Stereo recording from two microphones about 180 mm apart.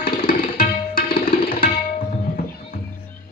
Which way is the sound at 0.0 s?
55° left (ahead or behind).